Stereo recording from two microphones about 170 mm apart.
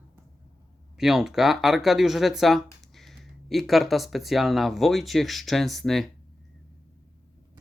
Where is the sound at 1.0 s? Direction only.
Centre (ahead or behind).